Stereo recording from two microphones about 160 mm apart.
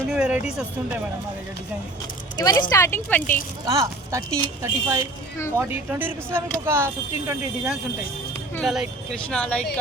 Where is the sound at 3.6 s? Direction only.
20° right (ahead or behind).